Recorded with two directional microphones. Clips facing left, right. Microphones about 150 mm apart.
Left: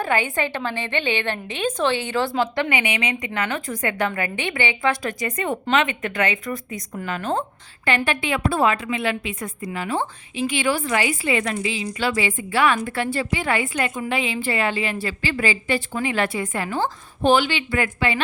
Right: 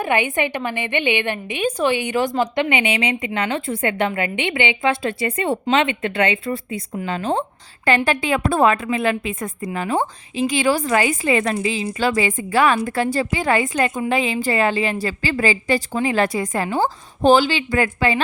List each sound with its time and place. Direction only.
0.0 s a woman's voice: 20° right (ahead or behind); by 18.2 s 40° right (ahead or behind)